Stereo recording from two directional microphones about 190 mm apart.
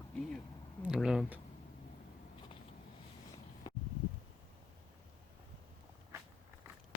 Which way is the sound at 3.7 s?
20° left (ahead or behind).